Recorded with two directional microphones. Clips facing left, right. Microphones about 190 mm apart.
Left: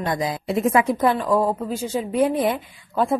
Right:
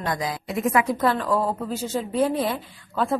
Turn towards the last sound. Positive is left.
turn(degrees=15)  # may be behind; listen again after turning